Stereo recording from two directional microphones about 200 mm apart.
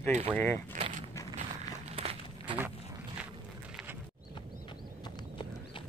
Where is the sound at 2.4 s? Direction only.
10° right (ahead or behind).